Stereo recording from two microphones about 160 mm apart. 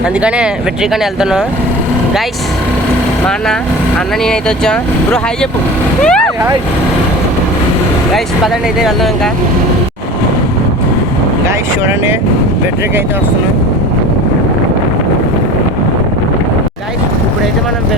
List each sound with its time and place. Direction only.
0.2 s speech: 5° right (ahead or behind)
4.3 s speech: 5° left (ahead or behind)
8.8 s speech: centre (ahead or behind)
11.4 s speech: 15° right (ahead or behind)